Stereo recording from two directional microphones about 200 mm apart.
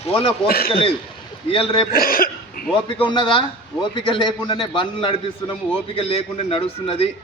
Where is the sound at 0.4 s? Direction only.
50° left (ahead or behind).